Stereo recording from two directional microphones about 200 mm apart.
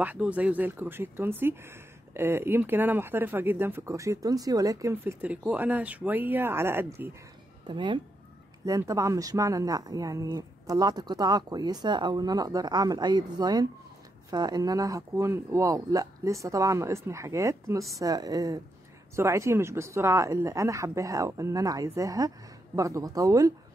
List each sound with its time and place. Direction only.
0.0 s speech: 5° right (ahead or behind)
7.6 s speech: 25° right (ahead or behind)